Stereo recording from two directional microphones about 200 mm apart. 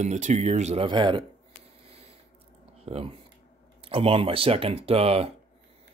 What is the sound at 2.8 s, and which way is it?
Speech, 30° right (ahead or behind).